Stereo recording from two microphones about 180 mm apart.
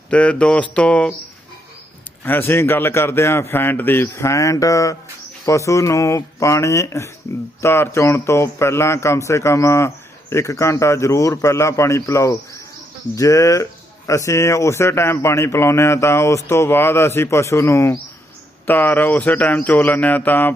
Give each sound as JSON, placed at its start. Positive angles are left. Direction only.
{"t": 0.1, "sound": "a man's voice", "side_deg": 5}
{"t": 2.2, "sound": "a man's voice", "side_deg": 10}